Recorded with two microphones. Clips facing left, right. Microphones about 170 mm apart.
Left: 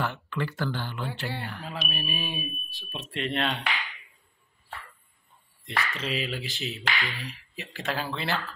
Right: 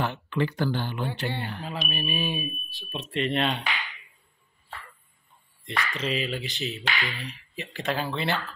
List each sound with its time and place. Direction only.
0.0 s speech: 20° right (ahead or behind)
1.7 s speech: centre (ahead or behind)
5.9 s speech: centre (ahead or behind)